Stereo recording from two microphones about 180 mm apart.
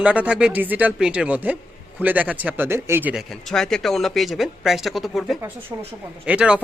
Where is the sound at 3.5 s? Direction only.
Centre (ahead or behind).